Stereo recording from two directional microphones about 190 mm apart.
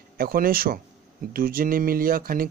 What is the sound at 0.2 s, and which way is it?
Speech, 50° right (ahead or behind).